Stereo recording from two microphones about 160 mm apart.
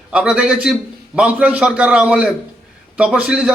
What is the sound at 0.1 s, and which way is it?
A man's voice, 5° right (ahead or behind).